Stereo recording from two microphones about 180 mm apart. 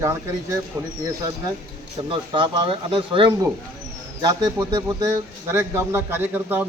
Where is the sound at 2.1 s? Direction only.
25° right (ahead or behind).